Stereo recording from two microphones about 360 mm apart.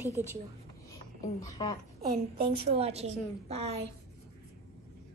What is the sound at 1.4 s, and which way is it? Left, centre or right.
Speech, centre.